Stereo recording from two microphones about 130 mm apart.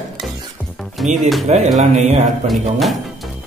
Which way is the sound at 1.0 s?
Centre (ahead or behind).